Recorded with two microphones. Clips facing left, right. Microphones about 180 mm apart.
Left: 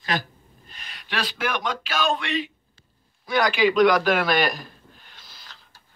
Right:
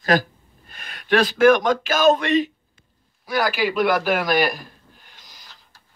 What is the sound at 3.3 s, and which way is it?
Speech, 5° right (ahead or behind).